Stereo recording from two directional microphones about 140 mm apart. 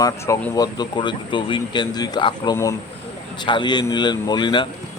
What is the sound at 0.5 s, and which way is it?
Speech, 30° left (ahead or behind).